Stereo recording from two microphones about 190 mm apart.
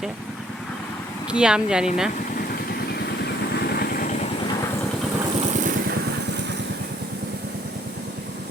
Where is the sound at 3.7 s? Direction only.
50° left (ahead or behind).